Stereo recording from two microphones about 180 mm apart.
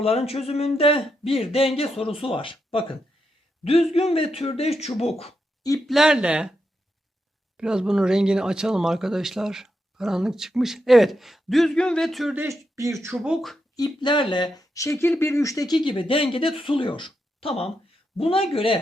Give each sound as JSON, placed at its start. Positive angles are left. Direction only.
{"t": 0.0, "sound": "a man's voice", "side_deg": 35}
{"t": 5.8, "sound": "speech", "side_deg": 0}
{"t": 7.5, "sound": "speech", "side_deg": -5}
{"t": 12.4, "sound": "speech", "side_deg": -15}
{"t": 13.1, "sound": "speech", "side_deg": 0}
{"t": 13.7, "sound": "speech", "side_deg": 25}